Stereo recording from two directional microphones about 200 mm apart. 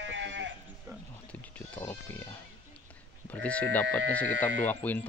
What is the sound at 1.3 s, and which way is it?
Sheep, 10° left (ahead or behind).